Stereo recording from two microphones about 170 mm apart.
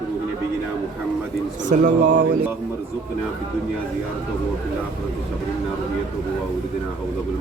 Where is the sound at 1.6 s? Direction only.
50° right (ahead or behind).